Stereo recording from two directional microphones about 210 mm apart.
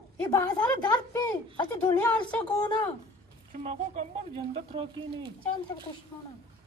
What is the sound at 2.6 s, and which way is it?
Speech, 25° left (ahead or behind).